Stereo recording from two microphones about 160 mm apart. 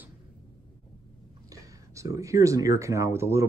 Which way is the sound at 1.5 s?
20° right (ahead or behind).